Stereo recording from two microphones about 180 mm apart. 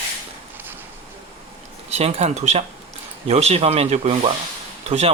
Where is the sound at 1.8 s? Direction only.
35° right (ahead or behind).